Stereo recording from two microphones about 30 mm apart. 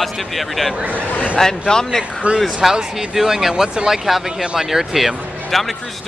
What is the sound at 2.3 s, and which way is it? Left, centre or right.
Speech, right.